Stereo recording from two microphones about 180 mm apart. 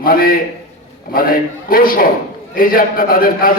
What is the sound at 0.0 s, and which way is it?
A man's voice, 55° left (ahead or behind).